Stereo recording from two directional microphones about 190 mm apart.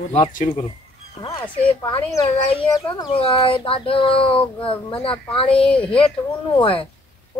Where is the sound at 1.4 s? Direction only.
10° left (ahead or behind).